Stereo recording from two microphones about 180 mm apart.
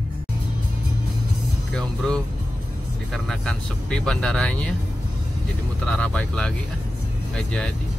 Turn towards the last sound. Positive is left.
turn(degrees=5)  # may be behind; listen again after turning